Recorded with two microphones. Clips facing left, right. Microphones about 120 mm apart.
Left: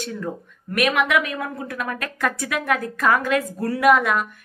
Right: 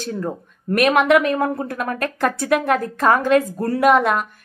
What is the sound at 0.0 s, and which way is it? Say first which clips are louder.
A woman's voice: right 3 dB; 35° right (ahead or behind).